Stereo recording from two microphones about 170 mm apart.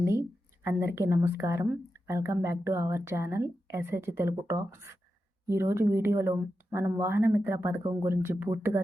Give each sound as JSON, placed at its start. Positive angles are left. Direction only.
{"t": 0.0, "sound": "speech", "side_deg": -15}